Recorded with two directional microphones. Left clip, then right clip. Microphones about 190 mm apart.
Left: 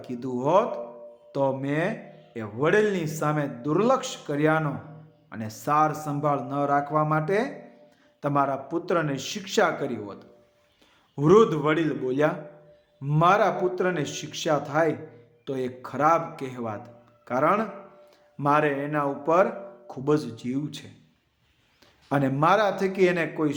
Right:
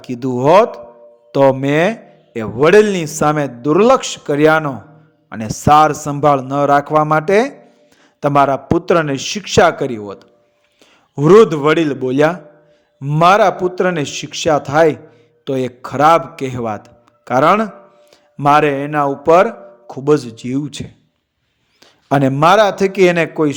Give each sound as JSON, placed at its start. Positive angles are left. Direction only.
{"t": 0.0, "sound": "a man's voice", "side_deg": -45}
{"t": 22.1, "sound": "a man's voice", "side_deg": -45}